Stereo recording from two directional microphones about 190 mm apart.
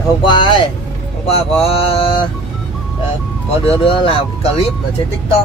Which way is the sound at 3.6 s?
30° left (ahead or behind).